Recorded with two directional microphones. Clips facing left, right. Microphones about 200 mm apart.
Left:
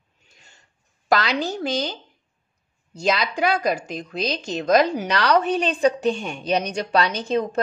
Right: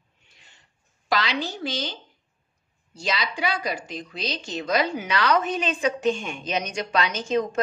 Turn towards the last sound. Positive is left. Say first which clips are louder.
# left 2 dB
turn(degrees=35)  # may be behind; listen again after turning